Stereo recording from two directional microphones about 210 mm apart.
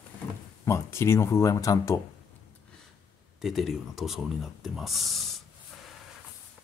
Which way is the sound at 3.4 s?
Centre (ahead or behind).